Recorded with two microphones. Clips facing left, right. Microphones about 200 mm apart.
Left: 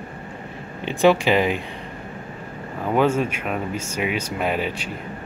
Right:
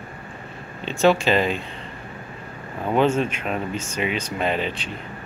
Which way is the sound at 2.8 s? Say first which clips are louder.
Even; 10° left (ahead or behind).